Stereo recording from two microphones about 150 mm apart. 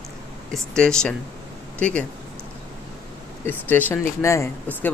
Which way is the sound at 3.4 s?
10° left (ahead or behind).